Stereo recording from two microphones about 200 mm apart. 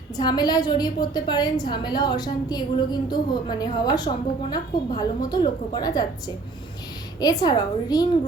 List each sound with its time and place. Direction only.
0.2 s a woman's voice: 20° left (ahead or behind)